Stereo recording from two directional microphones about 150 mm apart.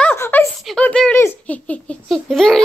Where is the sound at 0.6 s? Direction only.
5° left (ahead or behind).